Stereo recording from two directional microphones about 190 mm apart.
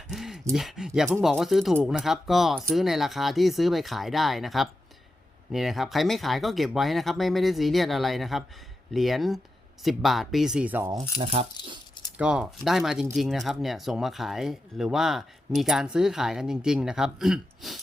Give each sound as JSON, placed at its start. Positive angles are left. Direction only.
{"t": 0.1, "sound": "a sound", "side_deg": 0}
{"t": 0.5, "sound": "speech", "side_deg": 0}
{"t": 11.2, "sound": "speech", "side_deg": -30}
{"t": 12.1, "sound": "speech", "side_deg": -5}